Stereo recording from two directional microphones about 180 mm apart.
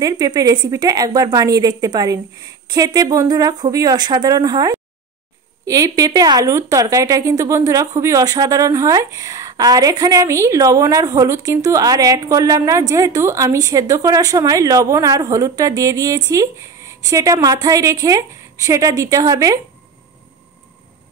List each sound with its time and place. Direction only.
0.0 s a woman's voice: 20° right (ahead or behind)